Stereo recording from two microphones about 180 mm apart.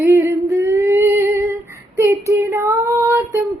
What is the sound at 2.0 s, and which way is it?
Child singing, 15° right (ahead or behind).